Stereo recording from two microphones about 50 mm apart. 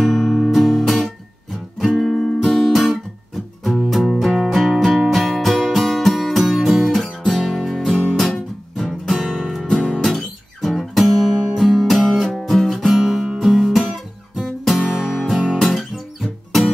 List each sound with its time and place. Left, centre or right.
0.0 s music: centre
12.9 s music: centre